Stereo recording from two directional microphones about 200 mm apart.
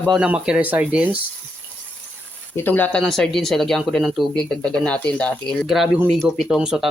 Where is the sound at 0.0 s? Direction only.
Centre (ahead or behind).